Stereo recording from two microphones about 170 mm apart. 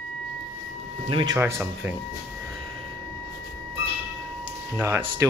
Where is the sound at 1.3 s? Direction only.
15° right (ahead or behind).